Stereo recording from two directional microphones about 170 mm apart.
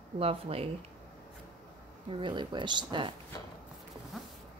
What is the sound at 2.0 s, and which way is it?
Speech, 30° right (ahead or behind).